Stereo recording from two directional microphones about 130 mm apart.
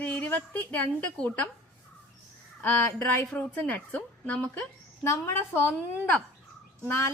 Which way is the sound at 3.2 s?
10° left (ahead or behind).